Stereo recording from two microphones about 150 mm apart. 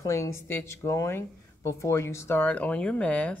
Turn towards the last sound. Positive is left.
turn(degrees=10)  # may be behind; listen again after turning